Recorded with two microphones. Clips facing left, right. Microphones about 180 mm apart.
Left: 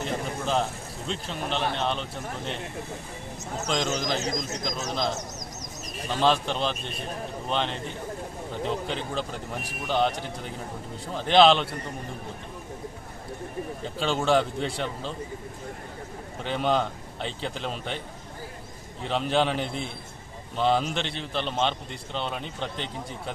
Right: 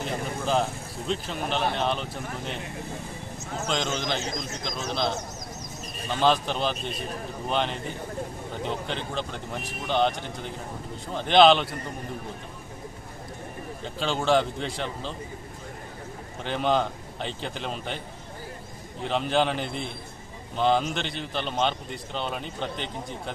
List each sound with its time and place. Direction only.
0.0 s a man's voice: centre (ahead or behind)
3.7 s a man's voice: centre (ahead or behind)
4.2 s speech: 40° left (ahead or behind)
6.1 s a man's voice: centre (ahead or behind)
13.8 s a man's voice: centre (ahead or behind)
16.4 s a man's voice: centre (ahead or behind)
19.0 s a man's voice: centre (ahead or behind)